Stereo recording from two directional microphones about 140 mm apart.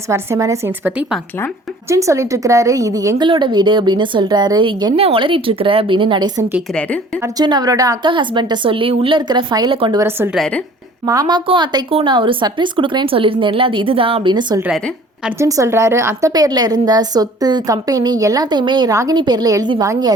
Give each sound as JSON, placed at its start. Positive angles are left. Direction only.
{"t": 0.1, "sound": "a woman's voice", "side_deg": -20}
{"t": 3.2, "sound": "a woman's voice", "side_deg": -35}
{"t": 4.9, "sound": "a woman's voice", "side_deg": -40}
{"t": 10.3, "sound": "a woman's voice", "side_deg": 5}
{"t": 11.0, "sound": "a woman's voice", "side_deg": -25}
{"t": 15.4, "sound": "a woman's voice", "side_deg": -20}